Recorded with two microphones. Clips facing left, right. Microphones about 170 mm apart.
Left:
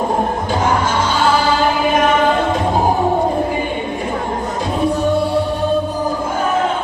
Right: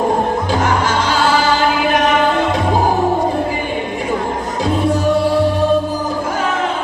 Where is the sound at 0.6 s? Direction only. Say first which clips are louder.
Even; 90° right.